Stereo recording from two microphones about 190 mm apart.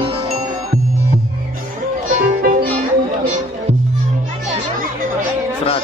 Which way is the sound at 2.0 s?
45° right (ahead or behind).